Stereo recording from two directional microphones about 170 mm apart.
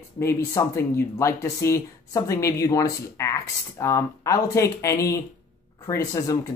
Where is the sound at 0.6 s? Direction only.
15° left (ahead or behind).